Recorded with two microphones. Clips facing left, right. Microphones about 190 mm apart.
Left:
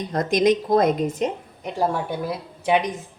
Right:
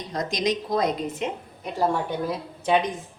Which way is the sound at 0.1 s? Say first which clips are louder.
Left 7 dB; 55° left (ahead or behind).